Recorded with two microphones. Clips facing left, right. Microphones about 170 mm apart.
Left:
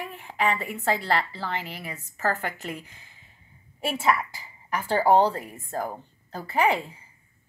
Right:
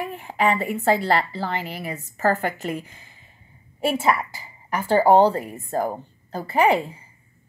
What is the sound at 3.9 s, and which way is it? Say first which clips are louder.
A woman's voice: left 1 dB; 30° right (ahead or behind).